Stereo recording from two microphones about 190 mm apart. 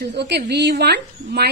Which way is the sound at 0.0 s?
60° right (ahead or behind).